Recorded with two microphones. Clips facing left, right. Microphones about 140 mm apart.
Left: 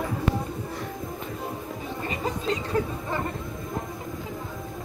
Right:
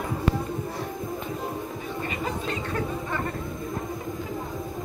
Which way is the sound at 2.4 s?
30° left (ahead or behind).